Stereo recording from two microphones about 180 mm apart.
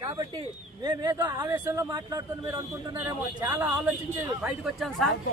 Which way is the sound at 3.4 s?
15° right (ahead or behind).